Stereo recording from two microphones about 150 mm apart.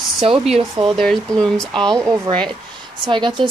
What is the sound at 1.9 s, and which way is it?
Speech, 25° right (ahead or behind).